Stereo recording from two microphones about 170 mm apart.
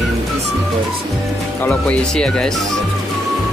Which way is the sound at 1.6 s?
5° left (ahead or behind).